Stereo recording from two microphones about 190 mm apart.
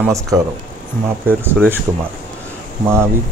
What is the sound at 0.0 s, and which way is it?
Speech, 15° right (ahead or behind).